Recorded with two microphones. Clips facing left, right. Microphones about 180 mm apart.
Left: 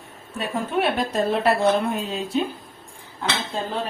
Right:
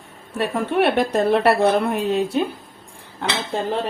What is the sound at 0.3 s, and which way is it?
A woman's voice, 70° right (ahead or behind).